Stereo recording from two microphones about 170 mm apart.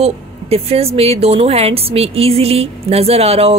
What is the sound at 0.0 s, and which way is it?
A woman's voice, 35° right (ahead or behind).